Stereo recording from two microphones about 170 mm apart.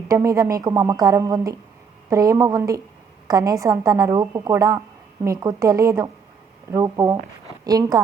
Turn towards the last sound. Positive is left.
turn(degrees=-20)  # may be behind; listen again after turning